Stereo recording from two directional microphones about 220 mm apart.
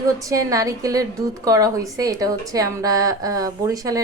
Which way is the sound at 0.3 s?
15° right (ahead or behind).